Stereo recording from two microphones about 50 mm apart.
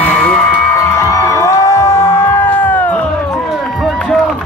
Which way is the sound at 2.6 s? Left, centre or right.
Left.